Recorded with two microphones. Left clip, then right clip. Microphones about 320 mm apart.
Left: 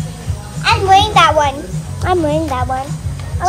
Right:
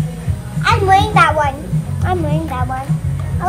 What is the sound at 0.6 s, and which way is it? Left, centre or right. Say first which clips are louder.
Music: left 2 dB; centre.